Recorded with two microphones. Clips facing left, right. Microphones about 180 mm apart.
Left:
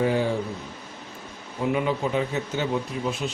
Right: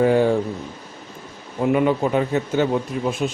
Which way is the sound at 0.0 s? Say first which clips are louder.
Right 7 dB; 55° right (ahead or behind).